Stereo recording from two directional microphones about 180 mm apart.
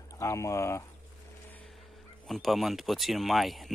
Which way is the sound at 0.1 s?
15° left (ahead or behind).